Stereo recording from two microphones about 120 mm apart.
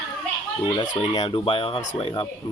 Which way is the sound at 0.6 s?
40° left (ahead or behind).